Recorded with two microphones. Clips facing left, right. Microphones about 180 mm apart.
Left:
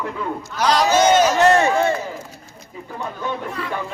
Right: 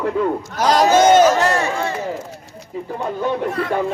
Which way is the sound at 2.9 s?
40° right (ahead or behind).